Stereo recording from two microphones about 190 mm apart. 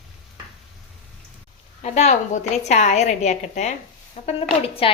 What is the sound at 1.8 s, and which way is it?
A woman's voice, 35° left (ahead or behind).